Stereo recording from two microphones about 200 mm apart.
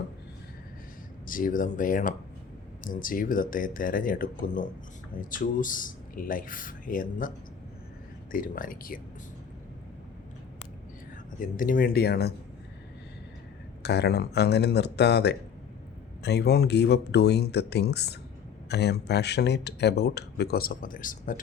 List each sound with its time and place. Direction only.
1.3 s speech: 45° left (ahead or behind)
11.3 s speech: 40° left (ahead or behind)
13.8 s speech: 55° left (ahead or behind)